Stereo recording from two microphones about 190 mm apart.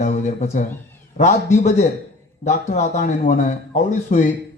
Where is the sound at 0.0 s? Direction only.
40° left (ahead or behind).